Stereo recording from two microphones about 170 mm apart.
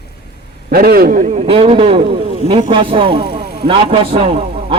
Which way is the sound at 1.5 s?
35° right (ahead or behind).